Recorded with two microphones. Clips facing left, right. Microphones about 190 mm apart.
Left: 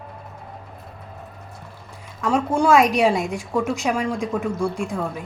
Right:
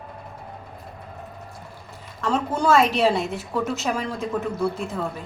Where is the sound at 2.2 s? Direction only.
5° left (ahead or behind).